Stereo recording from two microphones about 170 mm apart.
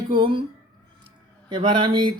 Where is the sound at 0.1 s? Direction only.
30° right (ahead or behind).